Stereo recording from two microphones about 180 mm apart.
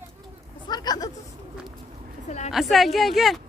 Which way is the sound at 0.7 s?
20° left (ahead or behind).